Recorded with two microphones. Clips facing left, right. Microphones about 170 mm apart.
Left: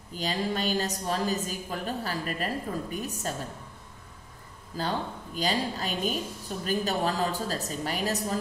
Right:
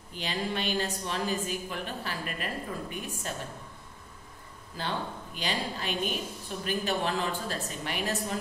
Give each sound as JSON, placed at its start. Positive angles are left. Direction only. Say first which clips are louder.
{"t": 0.1, "sound": "a woman's voice", "louder": "left 3 dB", "side_deg": 40}
{"t": 4.7, "sound": "a woman's voice", "louder": "left 3 dB", "side_deg": 40}